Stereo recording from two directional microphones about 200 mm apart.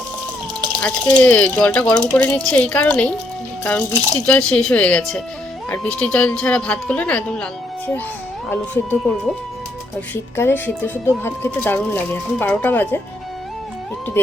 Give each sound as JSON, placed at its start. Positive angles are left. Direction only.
{"t": 0.8, "sound": "a woman's voice", "side_deg": 10}
{"t": 8.4, "sound": "speech", "side_deg": 10}
{"t": 10.3, "sound": "speech", "side_deg": 10}